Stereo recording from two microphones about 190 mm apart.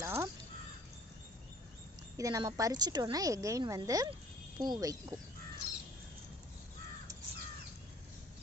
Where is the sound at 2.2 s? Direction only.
15° right (ahead or behind).